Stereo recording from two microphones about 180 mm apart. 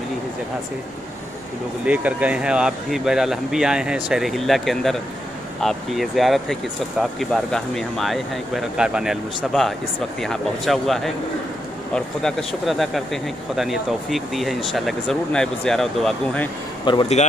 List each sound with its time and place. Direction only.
1.9 s speech: 5° right (ahead or behind)
16.8 s a man's voice: 25° left (ahead or behind)